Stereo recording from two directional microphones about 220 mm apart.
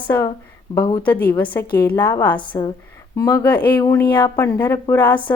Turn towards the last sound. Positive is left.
turn(degrees=10)  # may be behind; listen again after turning